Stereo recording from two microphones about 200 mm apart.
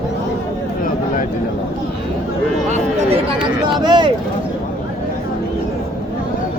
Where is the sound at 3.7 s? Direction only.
20° right (ahead or behind).